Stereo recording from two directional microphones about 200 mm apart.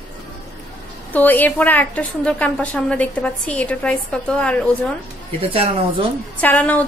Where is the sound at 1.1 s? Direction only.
10° left (ahead or behind).